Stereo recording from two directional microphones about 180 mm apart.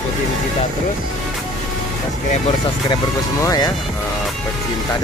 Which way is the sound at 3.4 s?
20° left (ahead or behind).